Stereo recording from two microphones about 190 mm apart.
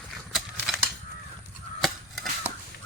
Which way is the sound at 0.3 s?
Centre (ahead or behind).